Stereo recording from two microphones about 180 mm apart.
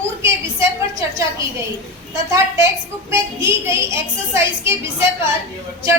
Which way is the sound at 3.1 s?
15° right (ahead or behind).